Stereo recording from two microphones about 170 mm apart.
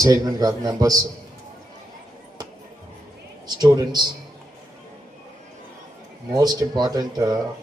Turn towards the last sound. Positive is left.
turn(degrees=-25)  # may be behind; listen again after turning